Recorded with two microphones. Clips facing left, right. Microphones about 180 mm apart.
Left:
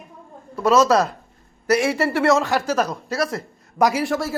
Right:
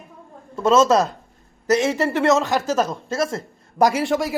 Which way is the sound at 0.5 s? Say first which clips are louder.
Even; 25° right (ahead or behind).